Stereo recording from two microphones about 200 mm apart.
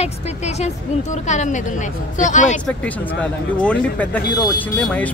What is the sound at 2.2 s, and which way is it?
Speech, 40° left (ahead or behind).